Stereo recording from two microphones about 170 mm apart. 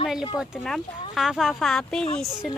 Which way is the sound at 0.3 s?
Centre (ahead or behind).